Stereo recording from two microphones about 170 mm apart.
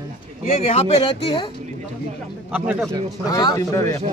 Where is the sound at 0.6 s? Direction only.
40° left (ahead or behind).